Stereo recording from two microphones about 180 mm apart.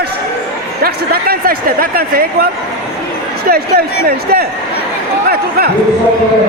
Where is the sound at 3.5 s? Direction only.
55° right (ahead or behind).